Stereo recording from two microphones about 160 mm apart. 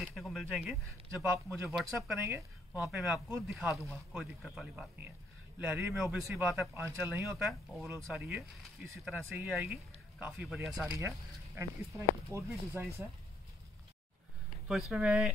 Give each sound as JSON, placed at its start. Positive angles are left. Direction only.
{"t": 0.0, "sound": "speech", "side_deg": 0}
{"t": 2.1, "sound": "speech", "side_deg": -15}
{"t": 10.9, "sound": "speech", "side_deg": -15}
{"t": 14.7, "sound": "speech", "side_deg": 0}